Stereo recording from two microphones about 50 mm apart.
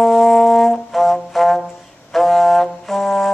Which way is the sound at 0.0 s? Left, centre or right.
Centre.